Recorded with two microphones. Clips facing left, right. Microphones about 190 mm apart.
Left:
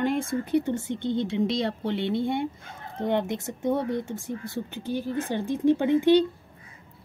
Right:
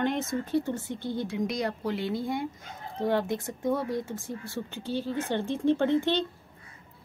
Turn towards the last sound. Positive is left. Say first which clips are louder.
# left 6 dB
turn(degrees=10)  # may be behind; listen again after turning